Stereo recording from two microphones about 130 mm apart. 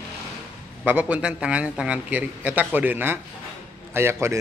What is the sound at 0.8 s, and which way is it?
A man's voice, 10° right (ahead or behind).